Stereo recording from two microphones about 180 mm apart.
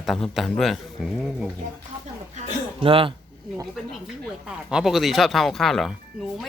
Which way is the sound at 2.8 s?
30° right (ahead or behind).